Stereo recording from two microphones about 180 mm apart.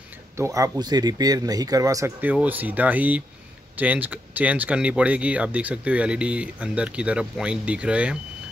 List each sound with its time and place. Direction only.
0.4 s speech: 20° right (ahead or behind)